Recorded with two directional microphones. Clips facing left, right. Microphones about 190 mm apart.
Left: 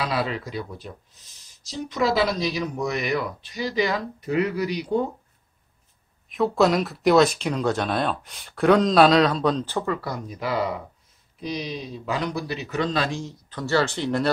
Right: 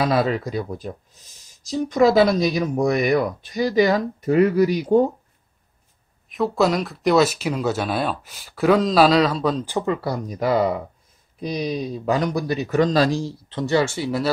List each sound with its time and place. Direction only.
0.0 s speech: 45° right (ahead or behind)
6.2 s speech: centre (ahead or behind)
9.7 s speech: 15° right (ahead or behind)
10.0 s speech: 35° right (ahead or behind); by 14.3 s 5° right (ahead or behind)